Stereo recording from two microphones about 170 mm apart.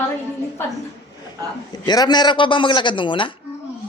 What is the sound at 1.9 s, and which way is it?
Speech, 25° left (ahead or behind).